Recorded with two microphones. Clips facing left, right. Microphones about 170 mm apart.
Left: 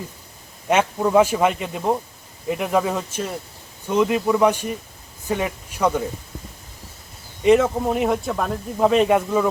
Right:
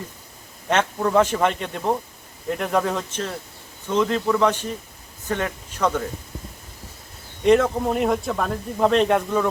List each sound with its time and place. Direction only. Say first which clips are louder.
0.7 s speech: left 2 dB; 10° left (ahead or behind)
7.4 s speech: left 1 dB; 5° left (ahead or behind)